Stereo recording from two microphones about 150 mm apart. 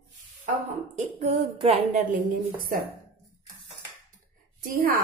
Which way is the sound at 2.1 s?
65° right (ahead or behind).